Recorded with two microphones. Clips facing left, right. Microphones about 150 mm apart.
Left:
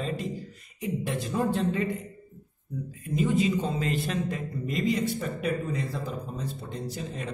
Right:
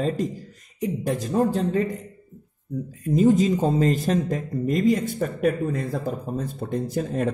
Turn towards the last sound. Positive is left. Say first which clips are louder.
# right 10 dB
turn(degrees=-50)  # may be behind; listen again after turning